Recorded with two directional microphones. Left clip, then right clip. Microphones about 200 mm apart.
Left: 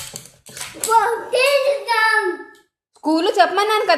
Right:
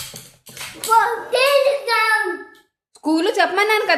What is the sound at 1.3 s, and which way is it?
Child singing, 20° right (ahead or behind).